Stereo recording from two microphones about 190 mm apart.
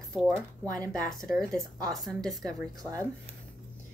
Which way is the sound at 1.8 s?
20° right (ahead or behind).